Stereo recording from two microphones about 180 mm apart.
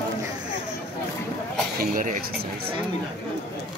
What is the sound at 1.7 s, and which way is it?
Speech, 50° right (ahead or behind).